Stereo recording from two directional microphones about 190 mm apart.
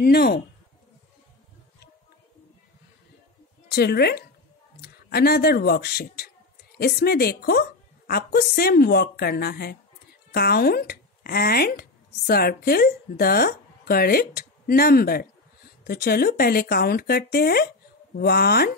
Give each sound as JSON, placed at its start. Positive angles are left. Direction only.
{"t": 0.0, "sound": "speech", "side_deg": 55}
{"t": 3.6, "sound": "a woman's voice", "side_deg": 55}